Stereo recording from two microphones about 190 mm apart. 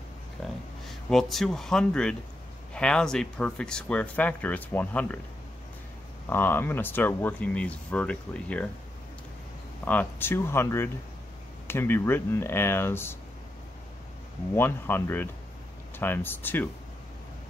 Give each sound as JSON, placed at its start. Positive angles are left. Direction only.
{"t": 0.4, "sound": "a sound", "side_deg": 0}
{"t": 0.8, "sound": "speech", "side_deg": 0}
{"t": 6.2, "sound": "speech", "side_deg": 10}
{"t": 9.8, "sound": "speech", "side_deg": 10}
{"t": 14.5, "sound": "speech", "side_deg": 10}